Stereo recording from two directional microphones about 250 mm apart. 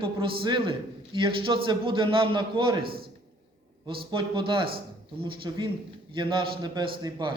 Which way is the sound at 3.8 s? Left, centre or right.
Centre.